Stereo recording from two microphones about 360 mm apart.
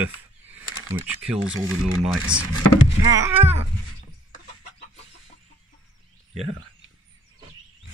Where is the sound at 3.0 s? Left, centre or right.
Centre.